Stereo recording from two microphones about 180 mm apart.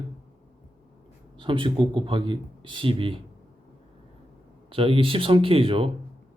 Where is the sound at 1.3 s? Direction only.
30° right (ahead or behind).